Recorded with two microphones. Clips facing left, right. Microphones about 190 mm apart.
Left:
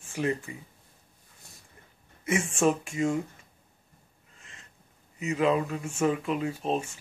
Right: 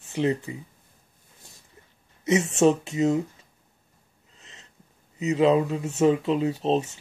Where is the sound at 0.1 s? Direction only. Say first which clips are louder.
Right 5 dB; 20° right (ahead or behind).